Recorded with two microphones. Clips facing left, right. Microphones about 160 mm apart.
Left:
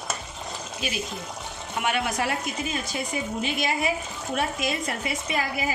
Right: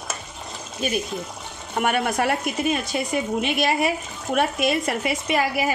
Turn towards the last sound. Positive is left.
turn(degrees=-70)  # may be behind; listen again after turning